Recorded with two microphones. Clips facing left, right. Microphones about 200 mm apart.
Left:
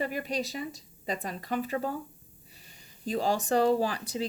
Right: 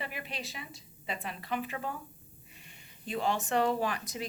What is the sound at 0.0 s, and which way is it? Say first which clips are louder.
Speech: left 9 dB; 40° left (ahead or behind).